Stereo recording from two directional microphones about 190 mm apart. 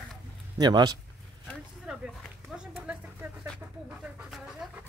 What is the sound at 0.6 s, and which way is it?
Speech, 20° right (ahead or behind).